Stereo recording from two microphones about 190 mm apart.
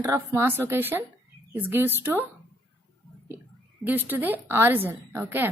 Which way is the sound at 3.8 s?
10° right (ahead or behind).